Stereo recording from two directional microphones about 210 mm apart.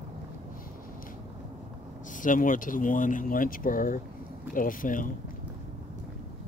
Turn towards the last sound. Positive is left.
turn(degrees=40)  # may be behind; listen again after turning